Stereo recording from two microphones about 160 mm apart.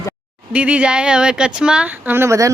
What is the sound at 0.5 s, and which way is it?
A woman's voice, 5° right (ahead or behind).